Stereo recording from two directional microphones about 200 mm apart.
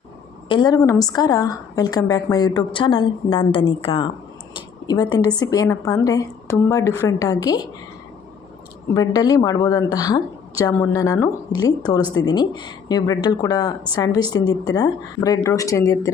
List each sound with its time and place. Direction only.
0.4 s a woman's voice: 20° left (ahead or behind)
4.5 s a sound: 20° left (ahead or behind)
5.4 s a woman's voice: 20° left (ahead or behind)
8.9 s a woman's voice: 20° left (ahead or behind)